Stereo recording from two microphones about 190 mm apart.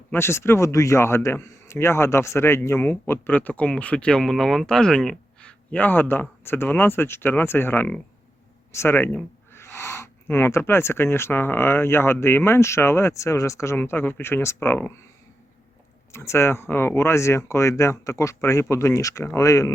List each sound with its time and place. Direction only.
0.1 s a man's voice: 15° left (ahead or behind)
16.1 s a man's voice: 15° left (ahead or behind)